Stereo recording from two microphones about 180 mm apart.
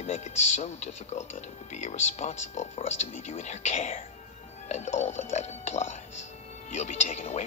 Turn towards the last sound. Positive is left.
turn(degrees=40)  # may be behind; listen again after turning